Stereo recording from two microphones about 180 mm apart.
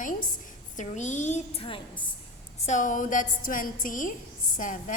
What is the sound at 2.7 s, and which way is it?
A woman's voice, 45° left (ahead or behind).